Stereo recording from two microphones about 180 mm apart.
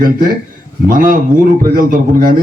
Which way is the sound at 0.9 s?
50° right (ahead or behind).